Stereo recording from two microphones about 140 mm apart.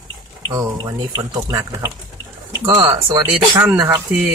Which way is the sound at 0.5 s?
25° right (ahead or behind).